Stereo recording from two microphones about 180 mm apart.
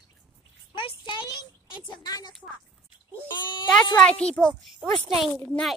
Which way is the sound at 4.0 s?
5° left (ahead or behind).